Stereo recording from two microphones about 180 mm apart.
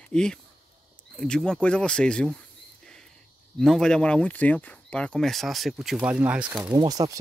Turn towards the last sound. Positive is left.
turn(degrees=-20)  # may be behind; listen again after turning